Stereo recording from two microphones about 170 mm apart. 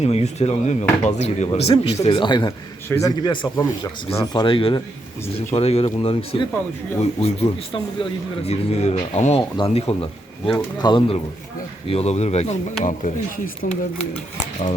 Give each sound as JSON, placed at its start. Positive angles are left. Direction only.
{"t": 0.0, "sound": "speech", "side_deg": 40}
{"t": 4.4, "sound": "speech", "side_deg": 30}
{"t": 8.4, "sound": "speech", "side_deg": 40}
{"t": 10.5, "sound": "speech", "side_deg": 25}
{"t": 11.9, "sound": "speech", "side_deg": 35}